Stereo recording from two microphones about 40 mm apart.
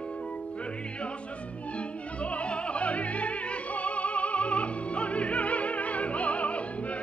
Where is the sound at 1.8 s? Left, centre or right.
Left.